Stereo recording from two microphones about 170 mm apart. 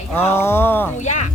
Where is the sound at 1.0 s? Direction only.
45° left (ahead or behind).